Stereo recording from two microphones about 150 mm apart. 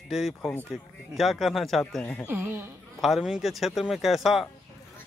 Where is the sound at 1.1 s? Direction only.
Centre (ahead or behind).